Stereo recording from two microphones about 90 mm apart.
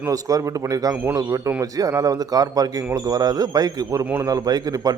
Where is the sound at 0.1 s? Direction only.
40° right (ahead or behind).